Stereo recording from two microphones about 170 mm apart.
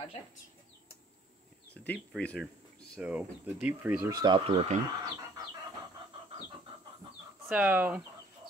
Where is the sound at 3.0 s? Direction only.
10° right (ahead or behind).